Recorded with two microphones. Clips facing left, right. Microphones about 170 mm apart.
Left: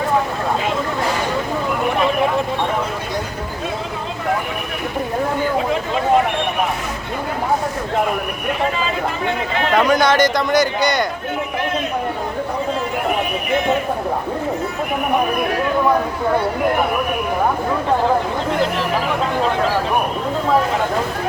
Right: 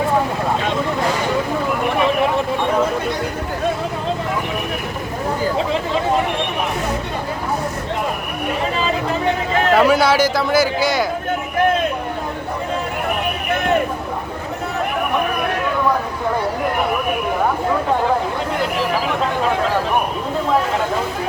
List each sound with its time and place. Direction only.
9.7 s a man's voice: 5° right (ahead or behind)